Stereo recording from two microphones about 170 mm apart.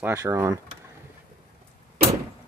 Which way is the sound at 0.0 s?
15° right (ahead or behind).